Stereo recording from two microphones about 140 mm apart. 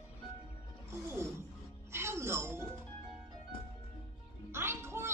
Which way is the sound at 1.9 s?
20° right (ahead or behind).